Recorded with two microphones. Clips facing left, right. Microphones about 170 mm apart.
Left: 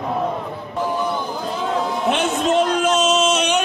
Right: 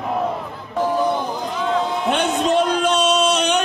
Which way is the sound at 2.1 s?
5° left (ahead or behind).